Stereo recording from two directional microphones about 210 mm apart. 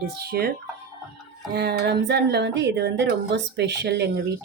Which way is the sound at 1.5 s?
50° right (ahead or behind).